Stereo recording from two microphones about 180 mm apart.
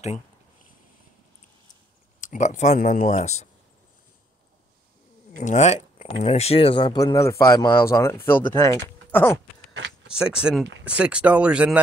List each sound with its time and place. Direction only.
2.1 s speech: 45° left (ahead or behind)
5.4 s speech: 40° left (ahead or behind); by 9.4 s 15° left (ahead or behind)
10.0 s a sound: 5° right (ahead or behind)
10.4 s speech: centre (ahead or behind)